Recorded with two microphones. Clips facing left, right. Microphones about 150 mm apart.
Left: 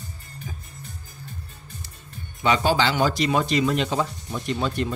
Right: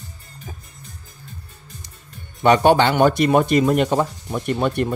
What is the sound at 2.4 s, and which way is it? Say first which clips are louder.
Speech: right 7 dB; 60° right (ahead or behind).